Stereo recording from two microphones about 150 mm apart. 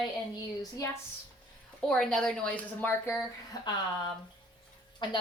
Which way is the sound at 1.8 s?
5° left (ahead or behind).